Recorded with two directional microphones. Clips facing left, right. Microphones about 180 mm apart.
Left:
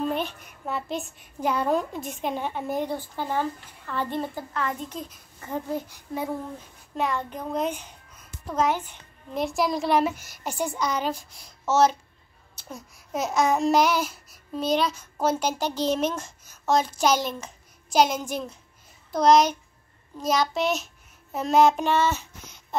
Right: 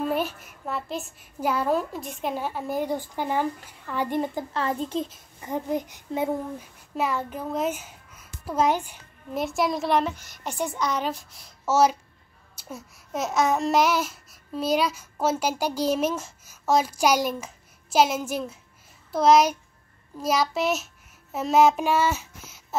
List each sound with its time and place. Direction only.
0.0 s a child's voice: 5° right (ahead or behind)
2.9 s babbling: 15° right (ahead or behind)
4.6 s a child's voice: 30° right (ahead or behind)
5.4 s a child's voice: 15° right (ahead or behind)
6.6 s a child's voice: 5° right (ahead or behind)
12.5 s babbling: 5° right (ahead or behind)
19.1 s a child's voice: 5° right (ahead or behind)
20.2 s child singing: 5° right (ahead or behind)